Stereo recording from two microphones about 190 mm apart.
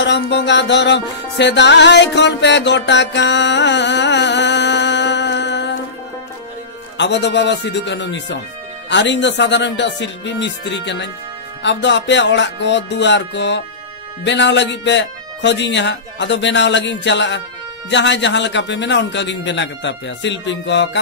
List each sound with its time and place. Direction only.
0.0 s music: 65° left (ahead or behind)
7.0 s speech: 65° left (ahead or behind)